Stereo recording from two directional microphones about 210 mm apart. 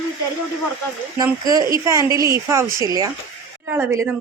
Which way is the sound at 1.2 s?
15° right (ahead or behind).